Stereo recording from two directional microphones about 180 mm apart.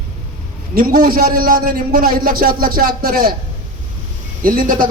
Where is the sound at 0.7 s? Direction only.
50° right (ahead or behind).